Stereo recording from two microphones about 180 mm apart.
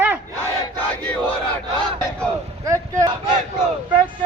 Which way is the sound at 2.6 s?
15° right (ahead or behind).